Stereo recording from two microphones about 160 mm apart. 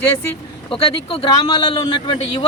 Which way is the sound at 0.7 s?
35° left (ahead or behind).